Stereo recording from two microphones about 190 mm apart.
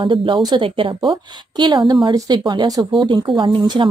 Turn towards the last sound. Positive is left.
turn(degrees=-25)  # may be behind; listen again after turning